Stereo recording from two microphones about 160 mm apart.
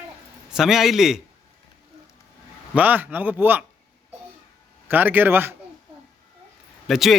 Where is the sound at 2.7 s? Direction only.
10° right (ahead or behind).